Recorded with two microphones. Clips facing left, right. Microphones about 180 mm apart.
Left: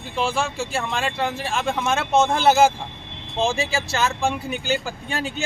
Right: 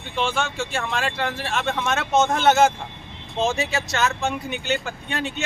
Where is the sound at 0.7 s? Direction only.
Centre (ahead or behind).